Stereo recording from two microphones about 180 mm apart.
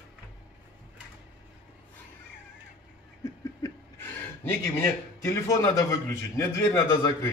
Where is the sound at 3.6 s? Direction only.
15° left (ahead or behind).